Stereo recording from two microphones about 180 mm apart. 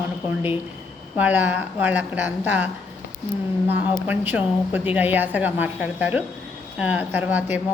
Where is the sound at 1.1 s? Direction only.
10° right (ahead or behind).